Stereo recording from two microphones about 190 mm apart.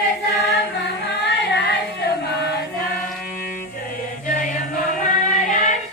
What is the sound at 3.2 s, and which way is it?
Music, 45° left (ahead or behind).